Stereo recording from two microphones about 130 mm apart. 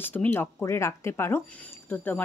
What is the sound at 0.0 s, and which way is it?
A woman's voice, 15° left (ahead or behind).